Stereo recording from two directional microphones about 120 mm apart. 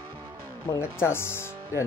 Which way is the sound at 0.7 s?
20° left (ahead or behind).